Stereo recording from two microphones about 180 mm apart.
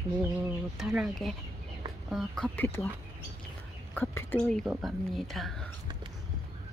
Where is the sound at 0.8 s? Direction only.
Centre (ahead or behind).